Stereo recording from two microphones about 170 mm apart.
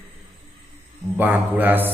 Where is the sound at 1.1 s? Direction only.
10° right (ahead or behind).